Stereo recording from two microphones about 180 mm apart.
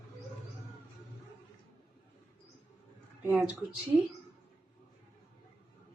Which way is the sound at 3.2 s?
5° right (ahead or behind).